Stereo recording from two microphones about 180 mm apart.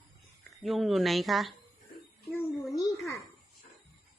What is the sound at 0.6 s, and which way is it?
Speech, centre (ahead or behind).